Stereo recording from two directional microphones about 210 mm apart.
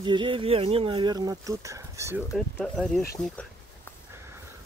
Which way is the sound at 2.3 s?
Centre (ahead or behind).